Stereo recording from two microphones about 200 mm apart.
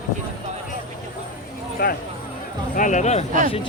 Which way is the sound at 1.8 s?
50° left (ahead or behind).